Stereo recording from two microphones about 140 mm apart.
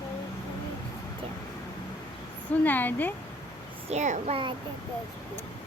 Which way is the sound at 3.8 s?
55° right (ahead or behind).